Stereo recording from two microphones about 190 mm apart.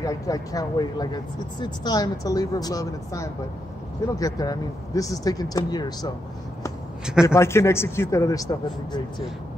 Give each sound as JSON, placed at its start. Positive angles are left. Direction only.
{"t": 0.0, "sound": "speech", "side_deg": 20}
{"t": 7.2, "sound": "a man's voice", "side_deg": 15}